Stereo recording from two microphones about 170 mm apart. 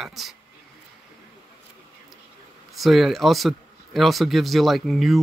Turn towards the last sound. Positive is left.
turn(degrees=0)  # may be behind; listen again after turning